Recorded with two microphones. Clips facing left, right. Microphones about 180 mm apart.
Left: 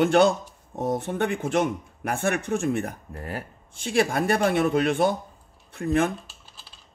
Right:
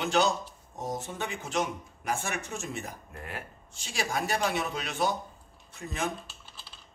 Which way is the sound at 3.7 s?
55° left (ahead or behind).